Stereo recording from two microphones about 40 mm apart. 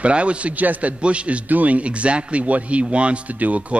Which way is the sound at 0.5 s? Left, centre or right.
Right.